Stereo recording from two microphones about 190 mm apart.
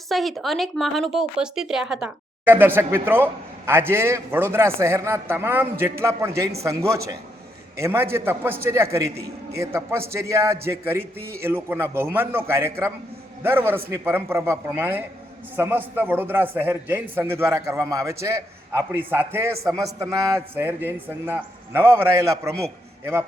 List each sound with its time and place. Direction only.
0.1 s a man's voice: centre (ahead or behind); by 22.5 s 15° right (ahead or behind)